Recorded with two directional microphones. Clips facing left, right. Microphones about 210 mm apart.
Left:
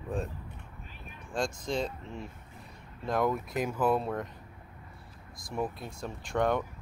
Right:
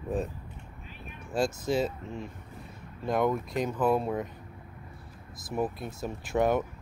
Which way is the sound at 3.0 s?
Centre (ahead or behind).